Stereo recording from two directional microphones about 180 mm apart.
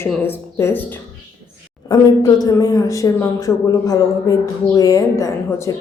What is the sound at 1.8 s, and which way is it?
A woman's voice, 20° left (ahead or behind).